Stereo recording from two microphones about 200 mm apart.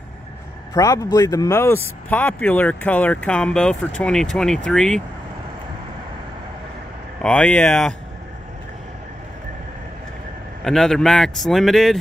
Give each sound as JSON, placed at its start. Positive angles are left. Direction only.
{"t": 0.7, "sound": "speech", "side_deg": 15}
{"t": 7.2, "sound": "speech", "side_deg": 5}
{"t": 10.6, "sound": "speech", "side_deg": 0}